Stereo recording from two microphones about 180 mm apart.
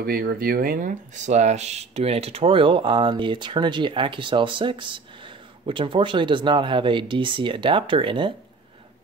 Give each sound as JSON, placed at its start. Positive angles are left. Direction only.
{"t": 0.0, "sound": "speech", "side_deg": -55}